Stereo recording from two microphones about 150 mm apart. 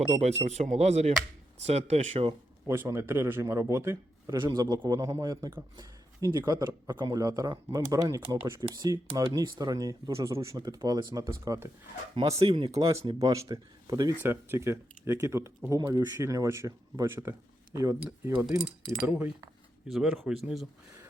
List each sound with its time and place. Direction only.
0.2 s speech: 45° right (ahead or behind)
2.6 s speech: 15° right (ahead or behind)
12.4 s speech: 35° right (ahead or behind)
13.1 s speech: 20° right (ahead or behind)
14.2 s speech: 15° right (ahead or behind)
19.1 s speech: 10° right (ahead or behind)
19.9 s speech: centre (ahead or behind)